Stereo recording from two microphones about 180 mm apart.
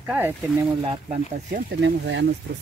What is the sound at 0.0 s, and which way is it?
Speech, 5° right (ahead or behind).